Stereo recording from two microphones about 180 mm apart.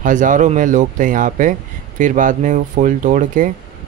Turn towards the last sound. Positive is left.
turn(degrees=-45)  # may be behind; listen again after turning